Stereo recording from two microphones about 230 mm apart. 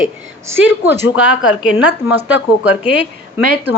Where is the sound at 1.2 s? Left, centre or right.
Left.